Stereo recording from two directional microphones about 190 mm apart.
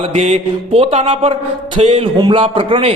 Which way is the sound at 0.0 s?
35° right (ahead or behind).